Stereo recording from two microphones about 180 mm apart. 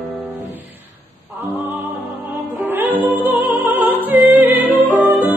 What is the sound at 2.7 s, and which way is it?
Music, 10° right (ahead or behind).